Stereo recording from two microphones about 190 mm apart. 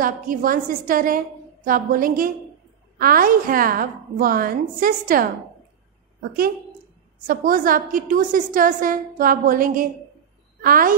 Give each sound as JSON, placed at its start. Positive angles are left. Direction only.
{"t": 0.0, "sound": "a woman's voice", "side_deg": -45}
{"t": 7.2, "sound": "a woman's voice", "side_deg": -45}